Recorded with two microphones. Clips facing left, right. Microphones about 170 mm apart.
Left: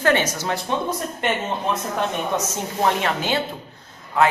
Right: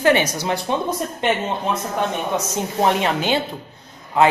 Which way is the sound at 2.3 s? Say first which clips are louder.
Right 3 dB; 20° right (ahead or behind).